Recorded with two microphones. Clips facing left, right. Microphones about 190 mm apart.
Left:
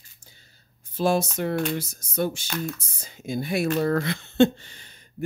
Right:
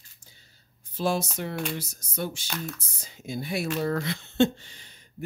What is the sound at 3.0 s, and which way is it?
Speech, 50° left (ahead or behind).